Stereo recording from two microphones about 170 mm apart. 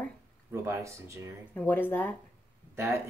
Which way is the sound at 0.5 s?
15° right (ahead or behind).